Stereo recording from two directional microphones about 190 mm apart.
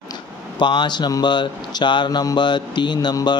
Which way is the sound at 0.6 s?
25° left (ahead or behind).